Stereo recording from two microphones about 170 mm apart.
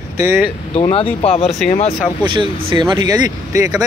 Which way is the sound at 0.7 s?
35° left (ahead or behind).